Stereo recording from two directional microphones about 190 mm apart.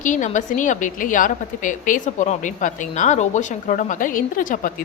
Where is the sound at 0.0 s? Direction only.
40° left (ahead or behind).